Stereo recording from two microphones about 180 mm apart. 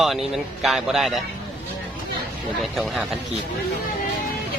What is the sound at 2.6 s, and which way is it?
Speech, centre (ahead or behind).